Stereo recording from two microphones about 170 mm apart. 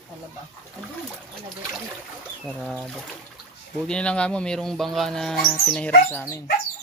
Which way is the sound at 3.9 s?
5° left (ahead or behind).